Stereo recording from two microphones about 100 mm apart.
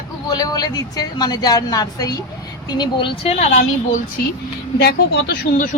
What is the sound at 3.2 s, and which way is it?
Speech, 90° left.